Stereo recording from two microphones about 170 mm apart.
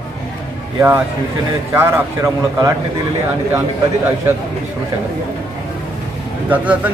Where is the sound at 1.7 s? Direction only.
15° right (ahead or behind).